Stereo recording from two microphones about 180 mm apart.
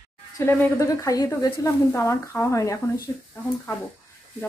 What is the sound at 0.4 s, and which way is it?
Speech, 15° left (ahead or behind).